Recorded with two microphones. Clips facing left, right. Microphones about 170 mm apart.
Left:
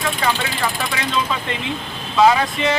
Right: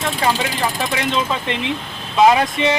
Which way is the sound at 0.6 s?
20° right (ahead or behind).